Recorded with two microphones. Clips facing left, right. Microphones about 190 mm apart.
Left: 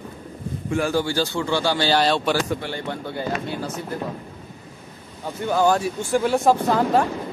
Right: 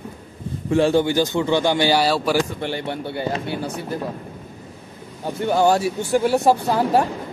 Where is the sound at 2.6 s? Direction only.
20° right (ahead or behind).